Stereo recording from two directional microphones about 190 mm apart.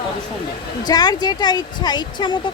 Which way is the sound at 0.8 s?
20° left (ahead or behind).